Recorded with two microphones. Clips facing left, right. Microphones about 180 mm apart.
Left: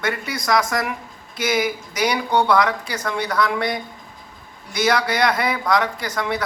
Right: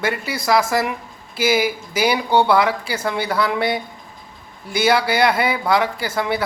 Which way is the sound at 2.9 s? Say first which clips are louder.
Right 2 dB; 30° right (ahead or behind).